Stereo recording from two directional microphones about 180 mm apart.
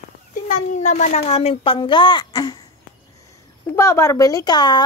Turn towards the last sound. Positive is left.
turn(degrees=25)  # may be behind; listen again after turning